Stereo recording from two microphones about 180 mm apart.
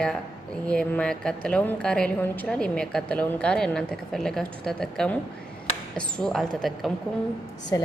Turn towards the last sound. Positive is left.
turn(degrees=20)  # may be behind; listen again after turning